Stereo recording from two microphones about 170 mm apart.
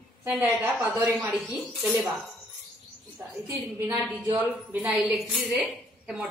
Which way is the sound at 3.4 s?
15° right (ahead or behind).